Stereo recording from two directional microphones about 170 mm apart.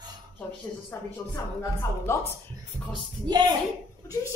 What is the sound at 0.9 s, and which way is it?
Speech, 15° left (ahead or behind).